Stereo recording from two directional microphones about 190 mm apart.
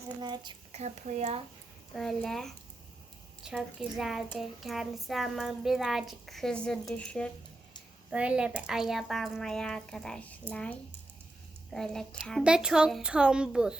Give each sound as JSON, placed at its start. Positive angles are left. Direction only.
{"t": 0.2, "sound": "a woman's voice", "side_deg": -25}
{"t": 0.7, "sound": "speech", "side_deg": -35}
{"t": 1.9, "sound": "a child's voice", "side_deg": 0}
{"t": 8.1, "sound": "a child's voice", "side_deg": -5}